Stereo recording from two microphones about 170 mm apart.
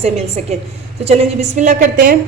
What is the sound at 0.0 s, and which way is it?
A woman's voice, 40° right (ahead or behind).